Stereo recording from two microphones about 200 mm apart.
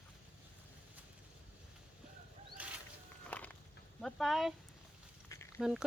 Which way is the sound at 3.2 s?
5° left (ahead or behind).